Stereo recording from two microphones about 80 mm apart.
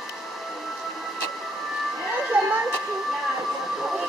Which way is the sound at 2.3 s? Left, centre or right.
Centre.